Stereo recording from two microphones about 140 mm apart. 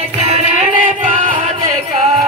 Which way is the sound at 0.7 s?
65° right (ahead or behind).